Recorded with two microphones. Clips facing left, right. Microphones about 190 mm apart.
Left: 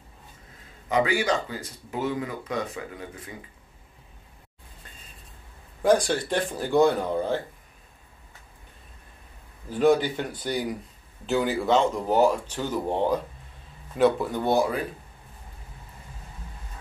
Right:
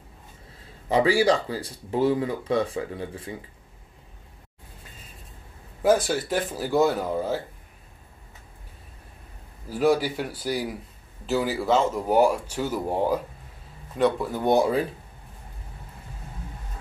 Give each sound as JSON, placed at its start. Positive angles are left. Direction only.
{"t": 0.8, "sound": "speech", "side_deg": -30}
{"t": 5.8, "sound": "speech", "side_deg": -5}
{"t": 9.7, "sound": "speech", "side_deg": -5}
{"t": 14.4, "sound": "speech", "side_deg": -20}